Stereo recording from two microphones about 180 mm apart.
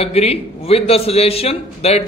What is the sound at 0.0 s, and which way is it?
A man's voice, 35° left (ahead or behind).